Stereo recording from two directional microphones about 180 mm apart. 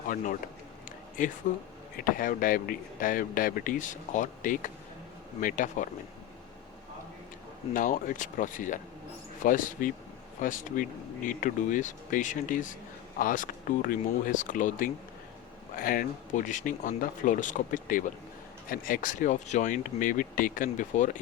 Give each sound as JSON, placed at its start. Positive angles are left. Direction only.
{"t": 1.2, "sound": "speech", "side_deg": 50}
{"t": 7.7, "sound": "speech", "side_deg": 50}